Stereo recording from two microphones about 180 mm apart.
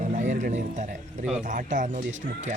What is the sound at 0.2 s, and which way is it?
Speech, 40° right (ahead or behind).